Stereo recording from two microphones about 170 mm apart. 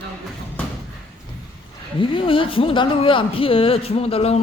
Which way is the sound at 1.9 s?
30° left (ahead or behind).